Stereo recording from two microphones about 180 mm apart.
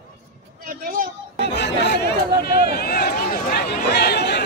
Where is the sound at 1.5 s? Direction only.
70° left (ahead or behind).